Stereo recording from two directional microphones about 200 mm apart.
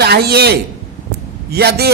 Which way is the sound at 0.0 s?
55° right (ahead or behind).